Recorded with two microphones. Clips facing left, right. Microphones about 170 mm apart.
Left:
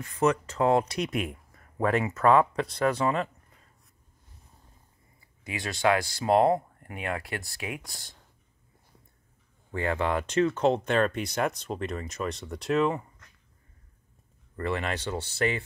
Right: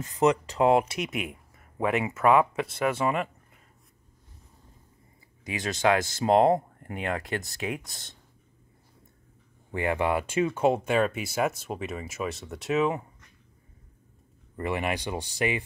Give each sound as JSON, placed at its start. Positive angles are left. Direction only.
{"t": 0.0, "sound": "speech", "side_deg": -15}
{"t": 1.8, "sound": "speech", "side_deg": -20}
{"t": 5.4, "sound": "speech", "side_deg": -20}
{"t": 9.7, "sound": "speech", "side_deg": -15}
{"t": 14.6, "sound": "speech", "side_deg": -15}